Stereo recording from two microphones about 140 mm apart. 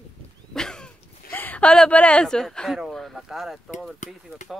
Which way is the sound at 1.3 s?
15° left (ahead or behind).